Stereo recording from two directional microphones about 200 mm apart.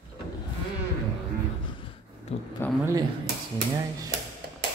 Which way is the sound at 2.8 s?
20° right (ahead or behind).